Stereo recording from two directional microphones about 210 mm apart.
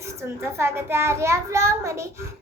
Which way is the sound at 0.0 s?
15° right (ahead or behind).